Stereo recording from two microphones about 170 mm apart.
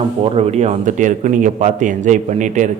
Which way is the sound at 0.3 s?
35° right (ahead or behind).